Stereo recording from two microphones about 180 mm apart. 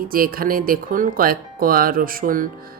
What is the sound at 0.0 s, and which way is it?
Speech, 55° right (ahead or behind).